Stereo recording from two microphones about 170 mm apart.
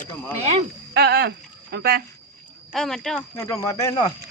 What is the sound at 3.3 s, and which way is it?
Speech, 20° left (ahead or behind).